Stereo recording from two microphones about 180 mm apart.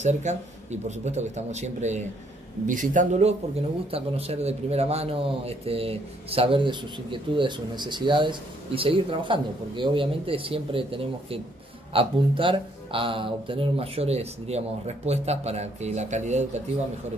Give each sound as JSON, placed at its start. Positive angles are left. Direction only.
{"t": 0.0, "sound": "a man's voice", "side_deg": -40}